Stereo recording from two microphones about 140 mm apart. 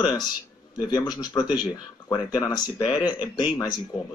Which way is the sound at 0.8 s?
30° left (ahead or behind).